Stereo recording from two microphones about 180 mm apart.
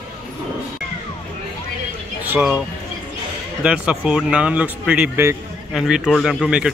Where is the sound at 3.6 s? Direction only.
5° right (ahead or behind).